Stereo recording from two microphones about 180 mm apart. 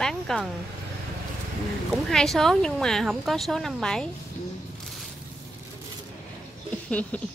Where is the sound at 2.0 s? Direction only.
Centre (ahead or behind).